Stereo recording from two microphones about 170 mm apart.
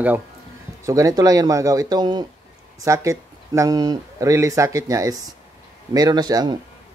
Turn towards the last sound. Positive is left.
turn(degrees=-25)  # may be behind; listen again after turning